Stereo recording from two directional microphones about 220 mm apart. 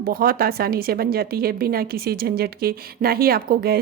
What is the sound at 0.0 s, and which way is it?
Speech, 40° right (ahead or behind).